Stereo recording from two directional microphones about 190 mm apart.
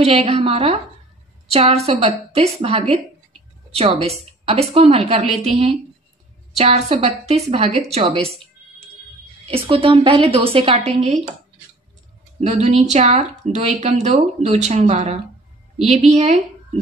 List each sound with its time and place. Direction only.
0.0 s a woman's voice: 30° right (ahead or behind)
4.0 s a woman's voice: 30° right (ahead or behind)
12.4 s a woman's voice: 35° right (ahead or behind)